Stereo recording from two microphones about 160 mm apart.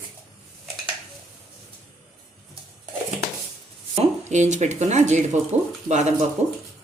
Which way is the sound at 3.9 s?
45° right (ahead or behind).